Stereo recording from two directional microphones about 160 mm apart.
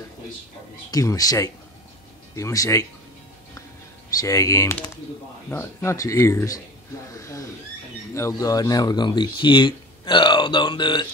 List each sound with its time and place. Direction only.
0.9 s speech: 20° left (ahead or behind)
4.2 s speech: 20° left (ahead or behind)